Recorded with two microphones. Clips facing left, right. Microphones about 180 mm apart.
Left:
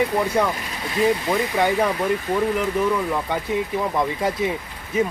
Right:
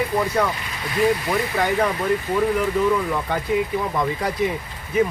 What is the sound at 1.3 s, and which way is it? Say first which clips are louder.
Speech: left 1 dB; 15° left (ahead or behind).